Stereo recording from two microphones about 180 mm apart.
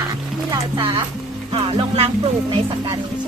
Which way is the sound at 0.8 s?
30° right (ahead or behind).